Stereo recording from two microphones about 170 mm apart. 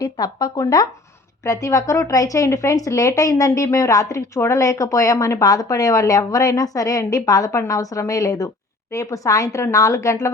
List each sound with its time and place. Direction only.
0.0 s a woman's voice: 25° left (ahead or behind)